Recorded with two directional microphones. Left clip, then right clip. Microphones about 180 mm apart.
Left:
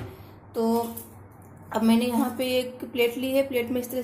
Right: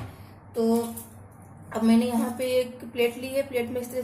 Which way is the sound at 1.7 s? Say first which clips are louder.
Left 1 dB; 30° left (ahead or behind).